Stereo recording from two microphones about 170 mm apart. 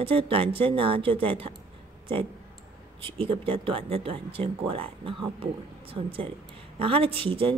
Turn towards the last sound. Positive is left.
turn(degrees=-30)  # may be behind; listen again after turning